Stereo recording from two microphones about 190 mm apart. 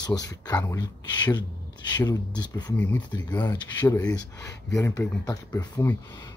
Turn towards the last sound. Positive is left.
turn(degrees=15)  # may be behind; listen again after turning